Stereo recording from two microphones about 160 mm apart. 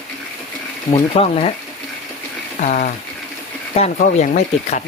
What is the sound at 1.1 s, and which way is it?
Speech, 40° left (ahead or behind).